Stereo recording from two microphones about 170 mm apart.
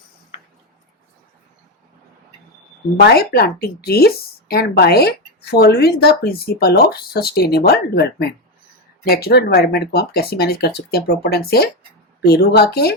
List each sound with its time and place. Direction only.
3.0 s speech: 70° left (ahead or behind)